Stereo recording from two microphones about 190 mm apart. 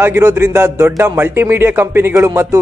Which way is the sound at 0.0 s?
15° right (ahead or behind).